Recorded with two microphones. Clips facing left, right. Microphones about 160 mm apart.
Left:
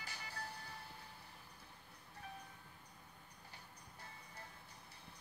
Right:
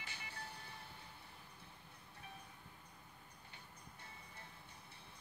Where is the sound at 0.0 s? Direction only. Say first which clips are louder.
Left 2 dB; 35° left (ahead or behind).